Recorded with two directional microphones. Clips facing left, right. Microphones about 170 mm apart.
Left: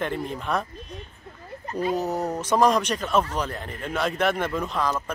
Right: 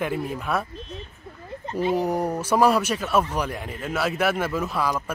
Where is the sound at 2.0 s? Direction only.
10° right (ahead or behind).